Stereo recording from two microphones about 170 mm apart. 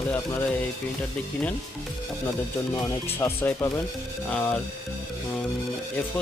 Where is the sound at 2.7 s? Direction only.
15° left (ahead or behind).